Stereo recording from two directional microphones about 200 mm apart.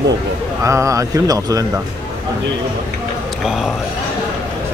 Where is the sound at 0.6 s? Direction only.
15° right (ahead or behind).